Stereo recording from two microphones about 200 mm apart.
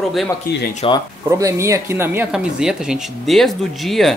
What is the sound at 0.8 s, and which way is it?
Speech, 25° left (ahead or behind).